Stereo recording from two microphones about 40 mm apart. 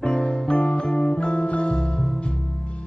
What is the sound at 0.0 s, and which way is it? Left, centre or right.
Music, left.